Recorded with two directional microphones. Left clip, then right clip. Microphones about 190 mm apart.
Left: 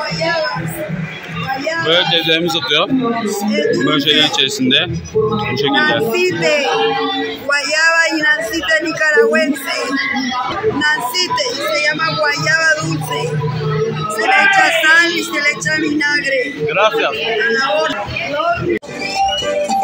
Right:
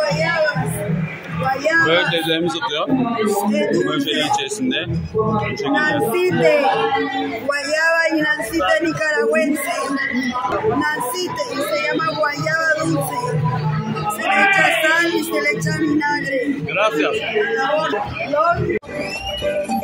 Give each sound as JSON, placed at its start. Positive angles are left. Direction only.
{"t": 2.1, "sound": "a man's voice", "side_deg": 5}
{"t": 3.8, "sound": "a man's voice", "side_deg": 25}
{"t": 6.1, "sound": "speech", "side_deg": -25}
{"t": 10.8, "sound": "speech", "side_deg": -25}
{"t": 14.2, "sound": "speech", "side_deg": -25}
{"t": 16.7, "sound": "a man's voice", "side_deg": 15}